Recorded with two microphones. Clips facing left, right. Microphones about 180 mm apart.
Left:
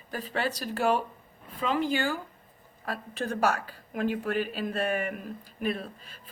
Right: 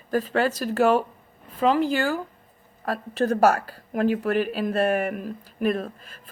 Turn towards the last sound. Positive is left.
turn(degrees=-45)  # may be behind; listen again after turning